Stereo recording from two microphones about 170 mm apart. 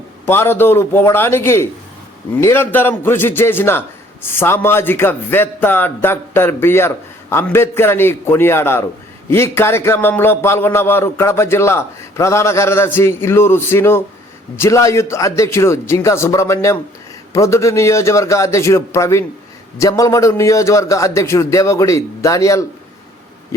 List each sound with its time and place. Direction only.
0.3 s a man's voice: 15° left (ahead or behind)